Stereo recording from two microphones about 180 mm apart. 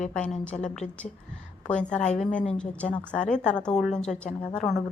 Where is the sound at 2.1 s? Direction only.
5° left (ahead or behind).